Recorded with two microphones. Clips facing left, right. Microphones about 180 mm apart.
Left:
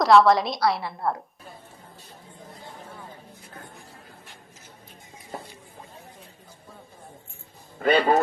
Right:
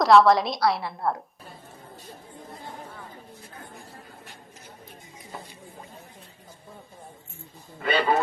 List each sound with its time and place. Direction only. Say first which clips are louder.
0.0 s a woman's voice: even; centre (ahead or behind)
7.8 s a man's voice: left 4 dB; 45° left (ahead or behind)